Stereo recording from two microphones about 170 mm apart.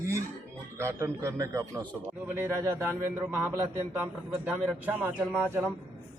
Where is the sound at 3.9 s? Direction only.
10° right (ahead or behind).